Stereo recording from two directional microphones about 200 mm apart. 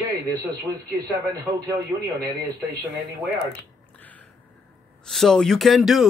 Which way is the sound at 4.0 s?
10° left (ahead or behind).